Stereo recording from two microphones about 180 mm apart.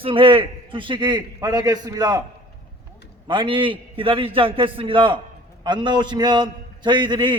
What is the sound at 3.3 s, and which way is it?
A man's voice, 25° right (ahead or behind).